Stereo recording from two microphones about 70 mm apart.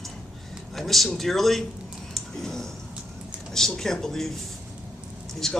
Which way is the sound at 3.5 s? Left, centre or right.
Centre.